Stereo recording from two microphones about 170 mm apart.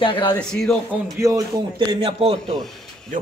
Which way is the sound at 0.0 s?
30° left (ahead or behind).